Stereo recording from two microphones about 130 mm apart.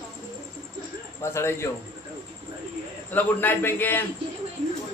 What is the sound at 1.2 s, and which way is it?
Speech, 20° left (ahead or behind).